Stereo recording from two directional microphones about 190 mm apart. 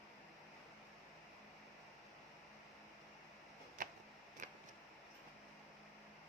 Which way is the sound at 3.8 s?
45° right (ahead or behind).